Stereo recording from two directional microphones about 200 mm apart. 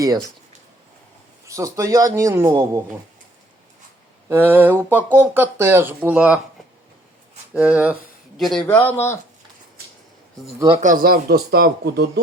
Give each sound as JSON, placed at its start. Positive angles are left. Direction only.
{"t": 1.5, "sound": "speech", "side_deg": -15}
{"t": 4.3, "sound": "speech", "side_deg": -10}
{"t": 7.5, "sound": "speech", "side_deg": -5}
{"t": 10.8, "sound": "speech", "side_deg": -45}